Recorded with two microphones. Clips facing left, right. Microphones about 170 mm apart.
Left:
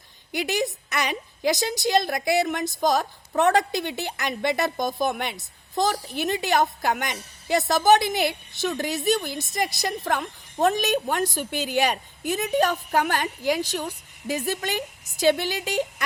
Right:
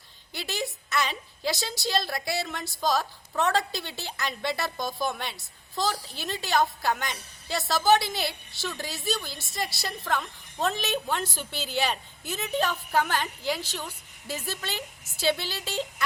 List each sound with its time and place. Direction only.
0.3 s a woman's voice: 15° left (ahead or behind)